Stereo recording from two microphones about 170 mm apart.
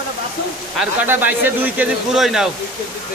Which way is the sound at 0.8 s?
10° right (ahead or behind).